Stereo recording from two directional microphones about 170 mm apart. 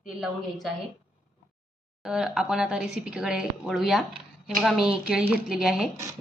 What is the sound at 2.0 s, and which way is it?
Speech, 5° right (ahead or behind).